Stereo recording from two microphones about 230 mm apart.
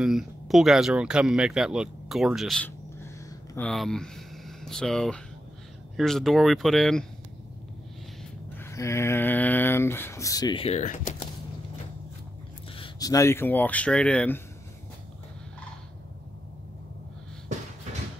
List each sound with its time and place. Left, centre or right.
0.0 s speech: centre
8.2 s speech: centre; by 11.2 s left
12.7 s speech: centre